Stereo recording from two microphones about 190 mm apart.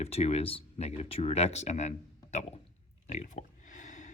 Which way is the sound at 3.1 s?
40° left (ahead or behind).